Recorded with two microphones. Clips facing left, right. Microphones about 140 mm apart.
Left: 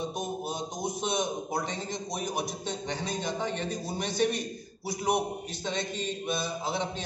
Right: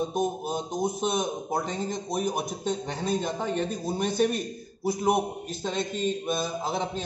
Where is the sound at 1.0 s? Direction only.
45° right (ahead or behind).